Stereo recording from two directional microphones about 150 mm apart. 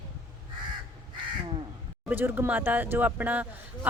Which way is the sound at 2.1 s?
15° right (ahead or behind).